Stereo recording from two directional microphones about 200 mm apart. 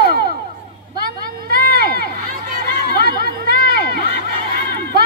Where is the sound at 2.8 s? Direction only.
50° right (ahead or behind).